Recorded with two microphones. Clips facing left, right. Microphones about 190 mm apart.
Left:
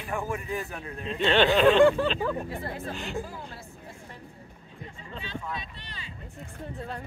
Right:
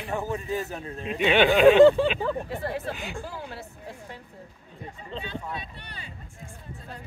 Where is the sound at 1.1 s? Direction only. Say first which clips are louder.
Right 2 dB; 10° right (ahead or behind).